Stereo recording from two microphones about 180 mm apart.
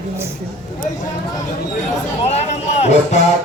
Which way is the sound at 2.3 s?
35° left (ahead or behind).